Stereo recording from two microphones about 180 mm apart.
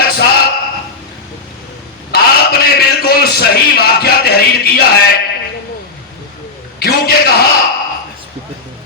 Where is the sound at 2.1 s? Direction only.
60° left (ahead or behind).